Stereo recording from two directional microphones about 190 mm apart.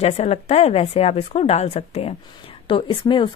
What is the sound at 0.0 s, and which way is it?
A woman's voice, 35° left (ahead or behind).